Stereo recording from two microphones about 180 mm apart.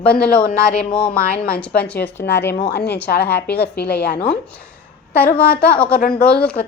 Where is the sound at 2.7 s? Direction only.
65° left (ahead or behind).